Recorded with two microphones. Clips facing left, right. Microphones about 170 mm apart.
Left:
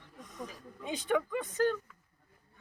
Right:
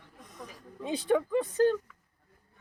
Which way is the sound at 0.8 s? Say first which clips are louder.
Right 4 dB; 35° right (ahead or behind).